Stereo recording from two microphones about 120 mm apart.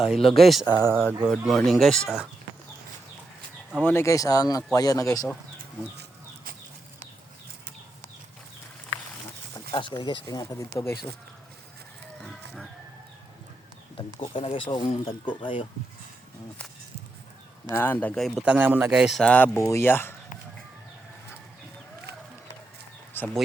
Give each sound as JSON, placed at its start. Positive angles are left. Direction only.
{"t": 0.0, "sound": "speech", "side_deg": 0}
{"t": 0.8, "sound": "a man's voice", "side_deg": -20}
{"t": 1.3, "sound": "speech", "side_deg": 0}
{"t": 3.8, "sound": "speech", "side_deg": 15}
{"t": 9.7, "sound": "speech", "side_deg": 40}
{"t": 13.9, "sound": "speech", "side_deg": 50}
{"t": 17.7, "sound": "speech", "side_deg": 20}
{"t": 18.1, "sound": "speech", "side_deg": 0}
{"t": 18.4, "sound": "a man's voice", "side_deg": -15}
{"t": 19.2, "sound": "speech", "side_deg": 10}
{"t": 19.5, "sound": "speech", "side_deg": 25}
{"t": 23.1, "sound": "speech", "side_deg": 20}